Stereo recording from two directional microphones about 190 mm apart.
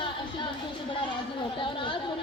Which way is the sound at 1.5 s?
25° left (ahead or behind).